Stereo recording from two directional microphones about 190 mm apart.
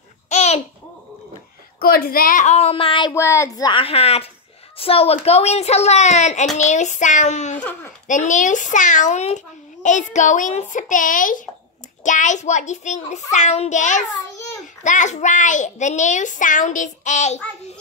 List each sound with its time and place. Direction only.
0.3 s babbling: 35° left (ahead or behind)
1.8 s a child's voice: 50° left (ahead or behind)